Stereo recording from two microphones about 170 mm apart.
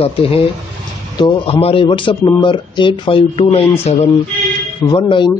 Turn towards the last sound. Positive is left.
turn(degrees=30)  # may be behind; listen again after turning